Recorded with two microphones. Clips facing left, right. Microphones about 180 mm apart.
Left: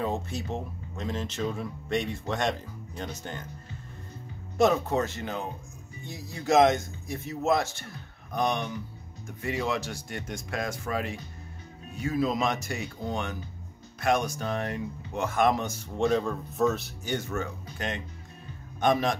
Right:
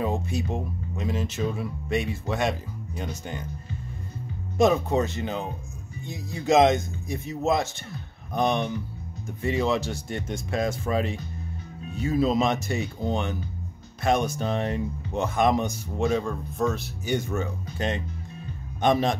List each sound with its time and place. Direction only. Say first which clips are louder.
0.0 s speech: right 3 dB; 10° right (ahead or behind)
4.6 s speech: right 2 dB; 15° right (ahead or behind)
16.0 s speech: even; centre (ahead or behind)
17.0 s speech: right 5 dB; 15° right (ahead or behind)
17.7 s speech: right 6 dB; 30° right (ahead or behind)